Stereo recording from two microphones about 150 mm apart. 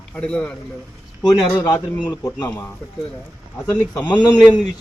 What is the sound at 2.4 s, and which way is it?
Speech, 10° left (ahead or behind).